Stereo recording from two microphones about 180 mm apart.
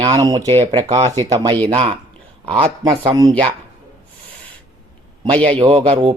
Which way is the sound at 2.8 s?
20° right (ahead or behind).